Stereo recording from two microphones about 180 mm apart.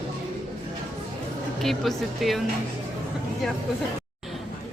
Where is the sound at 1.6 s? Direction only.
Centre (ahead or behind).